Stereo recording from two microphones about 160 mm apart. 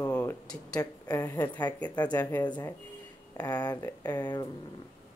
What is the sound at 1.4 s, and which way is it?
Speech, 10° left (ahead or behind).